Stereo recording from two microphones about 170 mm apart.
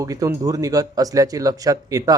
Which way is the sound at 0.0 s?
20° right (ahead or behind).